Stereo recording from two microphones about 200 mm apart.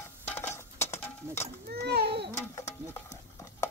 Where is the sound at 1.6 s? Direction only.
55° right (ahead or behind).